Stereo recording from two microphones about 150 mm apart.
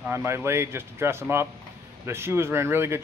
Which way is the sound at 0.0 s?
15° right (ahead or behind).